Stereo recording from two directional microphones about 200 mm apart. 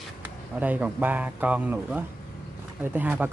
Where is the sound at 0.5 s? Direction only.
5° right (ahead or behind).